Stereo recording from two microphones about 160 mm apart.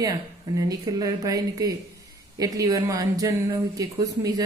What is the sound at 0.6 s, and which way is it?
A woman's voice, 20° right (ahead or behind).